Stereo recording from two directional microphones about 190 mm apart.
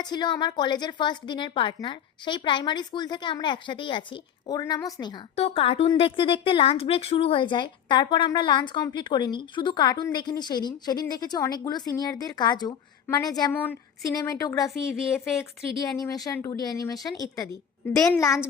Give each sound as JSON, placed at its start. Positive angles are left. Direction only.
{"t": 0.0, "sound": "a woman's voice", "side_deg": 20}
{"t": 13.5, "sound": "speech", "side_deg": 10}
{"t": 14.7, "sound": "a woman's voice", "side_deg": 0}
{"t": 15.8, "sound": "a woman's voice", "side_deg": 20}